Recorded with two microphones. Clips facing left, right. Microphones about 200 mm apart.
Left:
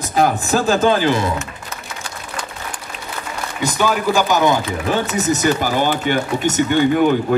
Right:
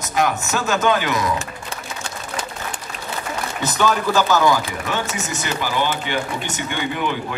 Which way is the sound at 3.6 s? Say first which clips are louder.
Left 2 dB; 10° left (ahead or behind).